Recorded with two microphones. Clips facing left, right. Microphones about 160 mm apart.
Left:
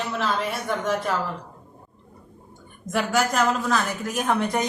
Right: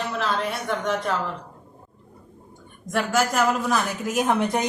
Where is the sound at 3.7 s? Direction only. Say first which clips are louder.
Right 1 dB; 20° right (ahead or behind).